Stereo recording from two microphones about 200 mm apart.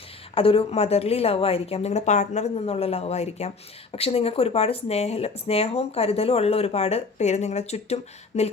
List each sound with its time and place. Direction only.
0.3 s speech: 30° left (ahead or behind)